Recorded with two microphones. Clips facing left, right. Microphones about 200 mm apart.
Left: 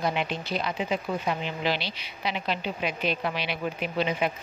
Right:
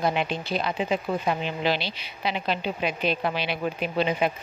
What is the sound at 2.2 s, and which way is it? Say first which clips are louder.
A woman's voice: right 2 dB; 30° right (ahead or behind).